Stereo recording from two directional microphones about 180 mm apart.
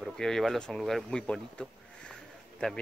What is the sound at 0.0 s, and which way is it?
Speech, centre (ahead or behind).